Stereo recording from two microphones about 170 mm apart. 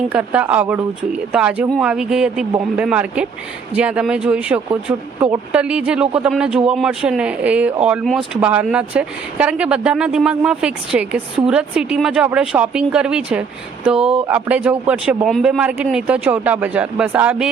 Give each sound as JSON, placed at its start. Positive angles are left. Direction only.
{"t": 0.1, "sound": "a man's voice", "side_deg": -10}